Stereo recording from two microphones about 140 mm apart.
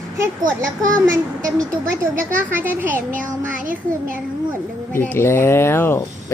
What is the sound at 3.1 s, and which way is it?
Child singing, 70° right (ahead or behind).